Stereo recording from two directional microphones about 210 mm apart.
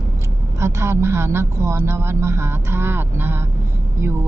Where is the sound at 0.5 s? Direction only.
15° right (ahead or behind).